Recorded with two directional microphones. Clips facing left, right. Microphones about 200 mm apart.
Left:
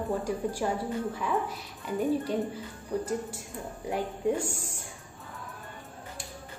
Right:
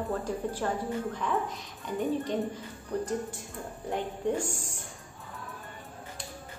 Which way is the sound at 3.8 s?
10° left (ahead or behind).